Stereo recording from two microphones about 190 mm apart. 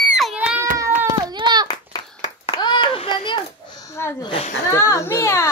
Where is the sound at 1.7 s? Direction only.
20° left (ahead or behind).